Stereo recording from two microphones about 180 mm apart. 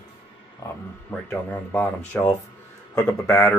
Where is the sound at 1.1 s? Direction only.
10° left (ahead or behind).